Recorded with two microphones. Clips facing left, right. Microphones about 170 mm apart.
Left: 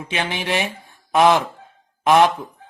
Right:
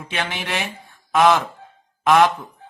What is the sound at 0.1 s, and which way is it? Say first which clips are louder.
Speech: left 3 dB; 20° left (ahead or behind).